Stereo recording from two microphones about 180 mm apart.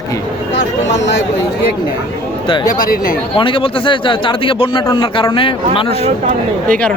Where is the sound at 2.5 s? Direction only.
25° left (ahead or behind).